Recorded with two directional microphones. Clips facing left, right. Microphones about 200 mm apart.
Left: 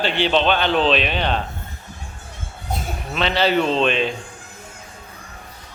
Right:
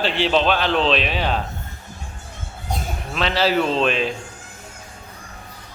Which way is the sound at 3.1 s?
Centre (ahead or behind).